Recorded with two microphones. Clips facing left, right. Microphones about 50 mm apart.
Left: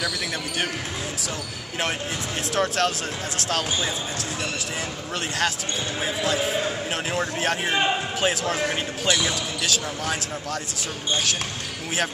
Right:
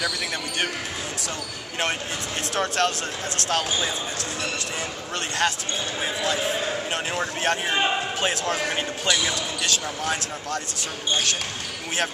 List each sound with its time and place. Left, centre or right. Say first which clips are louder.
2.5 s a man's voice: left 1 dB; centre
5.4 s a man's voice: right 2 dB; centre